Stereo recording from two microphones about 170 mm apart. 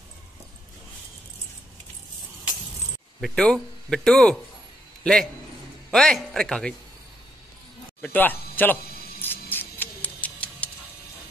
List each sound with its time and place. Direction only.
3.2 s a man's voice: centre (ahead or behind)
8.0 s speech: 10° left (ahead or behind)
9.2 s music: 10° left (ahead or behind)